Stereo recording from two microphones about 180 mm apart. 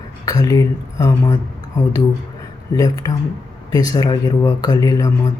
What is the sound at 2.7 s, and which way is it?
Speech, 20° left (ahead or behind).